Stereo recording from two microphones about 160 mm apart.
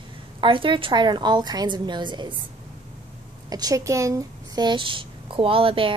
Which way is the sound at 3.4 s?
25° right (ahead or behind).